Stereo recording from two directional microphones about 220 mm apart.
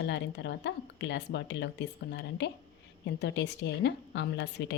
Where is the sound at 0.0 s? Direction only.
50° left (ahead or behind).